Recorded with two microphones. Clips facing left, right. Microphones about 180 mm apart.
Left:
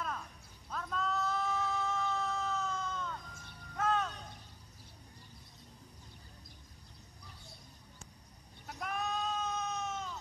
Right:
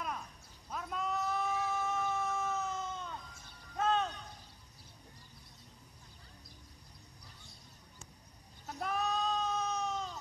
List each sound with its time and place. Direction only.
0.7 s a sound: 10° right (ahead or behind)
3.7 s music: 25° right (ahead or behind)
8.6 s bleat: 35° right (ahead or behind)